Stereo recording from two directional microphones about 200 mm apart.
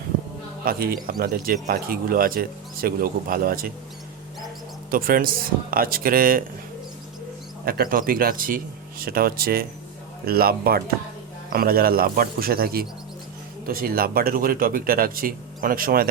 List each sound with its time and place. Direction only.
0.6 s speech: 45° right (ahead or behind)
4.9 s speech: 45° right (ahead or behind)
7.6 s speech: 45° right (ahead or behind)